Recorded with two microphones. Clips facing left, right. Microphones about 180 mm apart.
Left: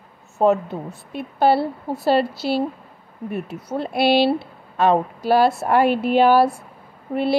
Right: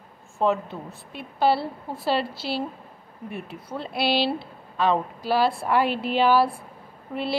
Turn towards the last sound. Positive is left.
turn(degrees=50)  # may be behind; listen again after turning